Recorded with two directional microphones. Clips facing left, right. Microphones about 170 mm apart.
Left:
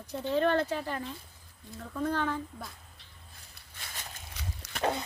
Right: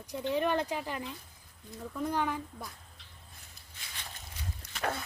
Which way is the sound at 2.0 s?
15° right (ahead or behind).